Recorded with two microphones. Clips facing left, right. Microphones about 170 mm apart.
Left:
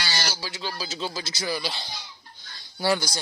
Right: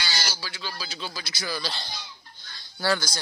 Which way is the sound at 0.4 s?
20° left (ahead or behind).